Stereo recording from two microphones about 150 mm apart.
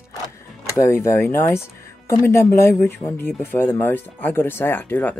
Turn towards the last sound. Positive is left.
turn(degrees=10)  # may be behind; listen again after turning